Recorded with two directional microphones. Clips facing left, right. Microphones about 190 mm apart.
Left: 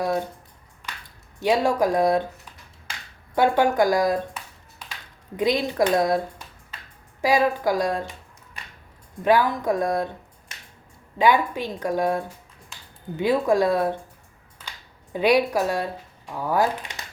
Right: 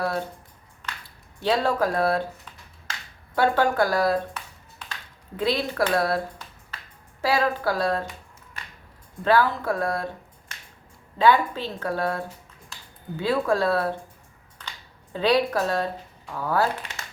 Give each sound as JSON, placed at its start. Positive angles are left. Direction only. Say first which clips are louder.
{"t": 0.0, "sound": "speech", "louder": "left 3 dB", "side_deg": 15}
{"t": 1.4, "sound": "speech", "louder": "left 2 dB", "side_deg": 15}
{"t": 5.4, "sound": "speech", "louder": "left 3 dB", "side_deg": 15}
{"t": 9.2, "sound": "speech", "louder": "left 1 dB", "side_deg": 15}
{"t": 11.2, "sound": "speech", "louder": "even", "side_deg": 15}
{"t": 15.1, "sound": "speech", "louder": "left 2 dB", "side_deg": 15}